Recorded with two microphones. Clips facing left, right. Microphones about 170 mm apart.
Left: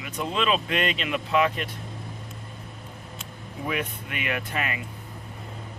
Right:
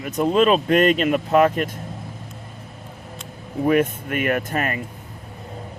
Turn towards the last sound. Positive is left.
turn(degrees=-45)  # may be behind; listen again after turning